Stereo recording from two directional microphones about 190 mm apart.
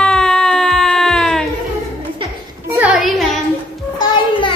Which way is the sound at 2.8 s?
Centre (ahead or behind).